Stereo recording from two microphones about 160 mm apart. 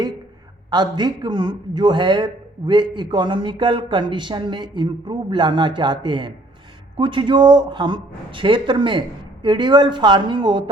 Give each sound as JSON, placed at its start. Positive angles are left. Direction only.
{"t": 0.7, "sound": "speech", "side_deg": -25}